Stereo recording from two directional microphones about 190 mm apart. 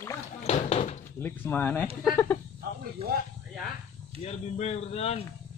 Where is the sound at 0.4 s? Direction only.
35° left (ahead or behind).